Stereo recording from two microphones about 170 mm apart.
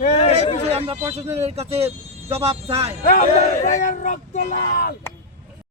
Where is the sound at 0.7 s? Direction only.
35° right (ahead or behind).